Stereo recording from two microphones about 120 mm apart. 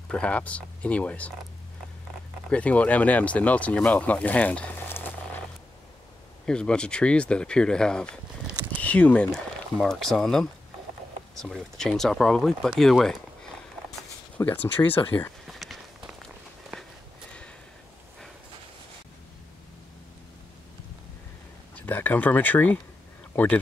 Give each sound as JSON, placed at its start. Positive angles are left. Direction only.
{"t": 0.1, "sound": "speech", "side_deg": 10}
{"t": 2.5, "sound": "speech", "side_deg": 10}
{"t": 6.4, "sound": "speech", "side_deg": 5}
{"t": 14.4, "sound": "speech", "side_deg": 15}
{"t": 15.4, "sound": "walk", "side_deg": 0}
{"t": 21.7, "sound": "speech", "side_deg": 15}